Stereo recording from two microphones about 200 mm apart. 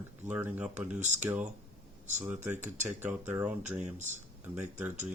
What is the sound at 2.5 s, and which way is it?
Speech, 35° right (ahead or behind).